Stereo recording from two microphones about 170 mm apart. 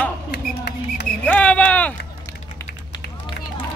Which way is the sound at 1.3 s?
10° left (ahead or behind).